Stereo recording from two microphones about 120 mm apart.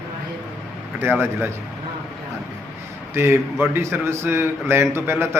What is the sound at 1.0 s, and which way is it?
Speech, 15° right (ahead or behind).